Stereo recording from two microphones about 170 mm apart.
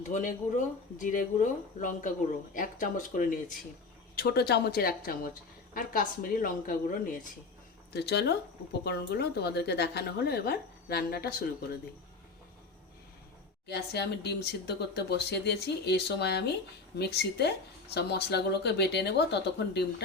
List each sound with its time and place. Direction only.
0.1 s speech: 50° left (ahead or behind)
4.1 s a woman's voice: 65° left (ahead or behind)
7.9 s a woman's voice: 75° left (ahead or behind)
13.7 s a woman's voice: 75° left (ahead or behind)